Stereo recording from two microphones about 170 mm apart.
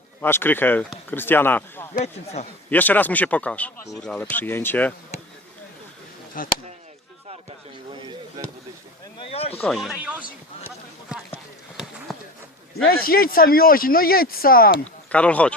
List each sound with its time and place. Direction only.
0.2 s speech: 15° left (ahead or behind)
2.0 s speech: 40° left (ahead or behind)
2.6 s speech: 10° left (ahead or behind)
6.4 s speech: 55° left (ahead or behind)
7.9 s basketball bounce: 25° right (ahead or behind)
9.1 s a sound: 35° left (ahead or behind)
9.6 s speech: centre (ahead or behind)
12.1 s a sound: centre (ahead or behind)
12.9 s speech: 60° left (ahead or behind)
15.1 s speech: 10° left (ahead or behind)